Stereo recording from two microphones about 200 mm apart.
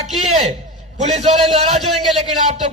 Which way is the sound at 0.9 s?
35° right (ahead or behind).